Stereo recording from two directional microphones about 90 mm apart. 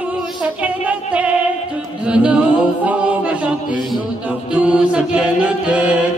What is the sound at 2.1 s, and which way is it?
A capella, 10° right (ahead or behind).